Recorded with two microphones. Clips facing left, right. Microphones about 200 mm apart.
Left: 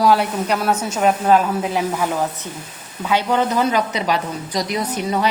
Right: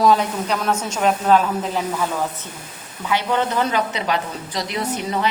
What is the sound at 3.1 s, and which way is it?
Speech, 15° left (ahead or behind).